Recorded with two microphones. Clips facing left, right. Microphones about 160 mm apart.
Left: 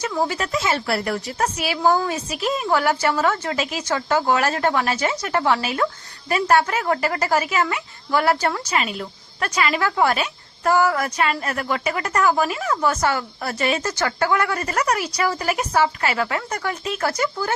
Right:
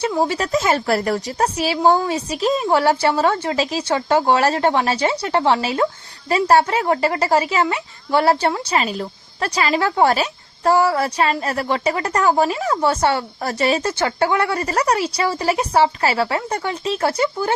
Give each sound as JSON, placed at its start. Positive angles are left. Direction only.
{"t": 0.0, "sound": "a woman's voice", "side_deg": -30}
{"t": 14.0, "sound": "speech", "side_deg": -25}